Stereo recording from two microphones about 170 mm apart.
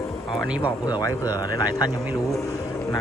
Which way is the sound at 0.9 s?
20° left (ahead or behind).